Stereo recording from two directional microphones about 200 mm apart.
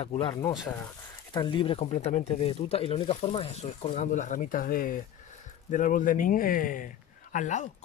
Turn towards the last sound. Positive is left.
turn(degrees=35)  # may be behind; listen again after turning